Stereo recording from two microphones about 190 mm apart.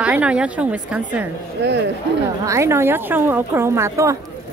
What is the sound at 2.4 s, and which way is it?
Speech, 15° right (ahead or behind).